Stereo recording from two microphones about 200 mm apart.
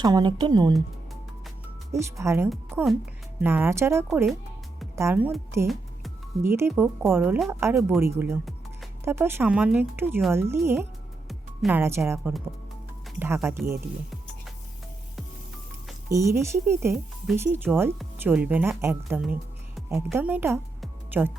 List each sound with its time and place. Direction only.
0.0 s speech: 20° right (ahead or behind)
1.9 s speech: 15° right (ahead or behind)
11.3 s music: centre (ahead or behind)
11.8 s speech: 15° right (ahead or behind)
16.0 s speech: 15° right (ahead or behind)
19.1 s music: 5° right (ahead or behind)
20.1 s speech: 10° right (ahead or behind)
20.8 s music: 10° right (ahead or behind)